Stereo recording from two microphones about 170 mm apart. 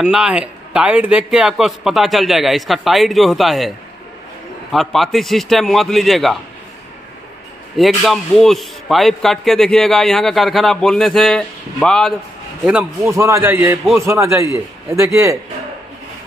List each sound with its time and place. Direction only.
0.0 s a man's voice: 5° right (ahead or behind)
4.7 s a man's voice: centre (ahead or behind)
7.7 s a man's voice: centre (ahead or behind)
12.6 s a man's voice: 5° right (ahead or behind)
13.1 s a man's voice: 15° right (ahead or behind)